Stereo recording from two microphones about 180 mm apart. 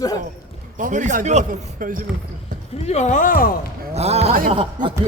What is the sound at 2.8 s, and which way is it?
Speech, 40° left (ahead or behind).